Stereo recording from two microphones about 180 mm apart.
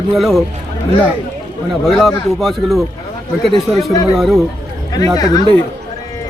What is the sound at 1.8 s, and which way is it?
Speech, centre (ahead or behind).